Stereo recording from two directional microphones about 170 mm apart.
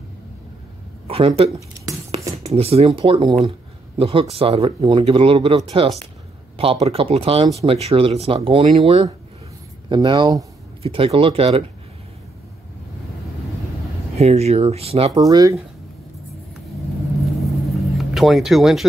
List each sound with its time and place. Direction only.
1.0 s speech: 35° right (ahead or behind)
14.1 s speech: 40° right (ahead or behind)
15.1 s speech: 20° right (ahead or behind)
17.4 s vehicle: centre (ahead or behind)